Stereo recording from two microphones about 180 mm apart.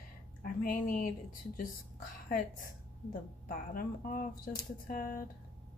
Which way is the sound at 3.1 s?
50° left (ahead or behind).